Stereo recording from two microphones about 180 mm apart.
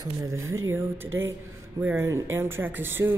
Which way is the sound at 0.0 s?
20° right (ahead or behind).